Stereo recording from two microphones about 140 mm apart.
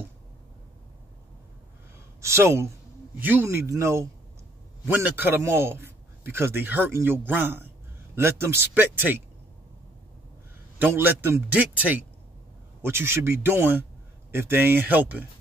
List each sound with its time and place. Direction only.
2.2 s a man's voice: 20° right (ahead or behind)
10.8 s a man's voice: 15° right (ahead or behind)